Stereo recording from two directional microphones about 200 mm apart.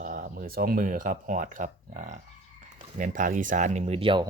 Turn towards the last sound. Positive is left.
turn(degrees=-25)  # may be behind; listen again after turning